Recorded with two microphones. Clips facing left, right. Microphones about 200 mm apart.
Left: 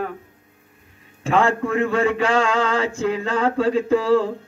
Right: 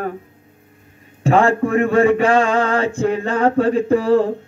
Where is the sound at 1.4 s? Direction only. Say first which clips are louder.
Right 4 dB; 55° right (ahead or behind).